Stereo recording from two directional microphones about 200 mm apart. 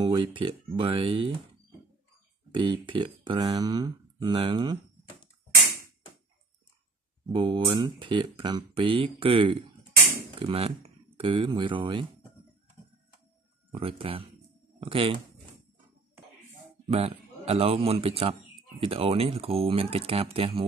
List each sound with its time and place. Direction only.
0.0 s speech: 25° right (ahead or behind)
2.5 s speech: 25° right (ahead or behind)
7.3 s speech: 25° right (ahead or behind)
13.7 s speech: 25° right (ahead or behind)
16.8 s speech: 30° right (ahead or behind)